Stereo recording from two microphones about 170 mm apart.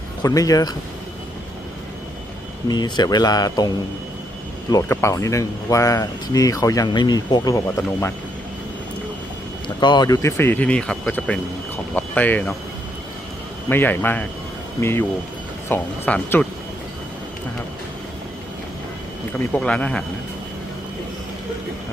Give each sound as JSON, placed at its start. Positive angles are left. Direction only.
{"t": 0.2, "sound": "speech", "side_deg": 20}
{"t": 2.6, "sound": "speech", "side_deg": 25}
{"t": 4.7, "sound": "speech", "side_deg": 15}
{"t": 9.8, "sound": "speech", "side_deg": 25}
{"t": 13.7, "sound": "speech", "side_deg": 10}
{"t": 19.5, "sound": "speech", "side_deg": 5}